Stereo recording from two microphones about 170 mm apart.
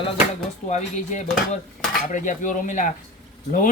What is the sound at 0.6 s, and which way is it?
Speech, 45° left (ahead or behind).